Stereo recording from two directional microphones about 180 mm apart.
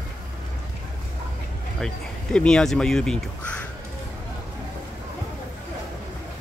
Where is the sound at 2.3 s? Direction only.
5° left (ahead or behind).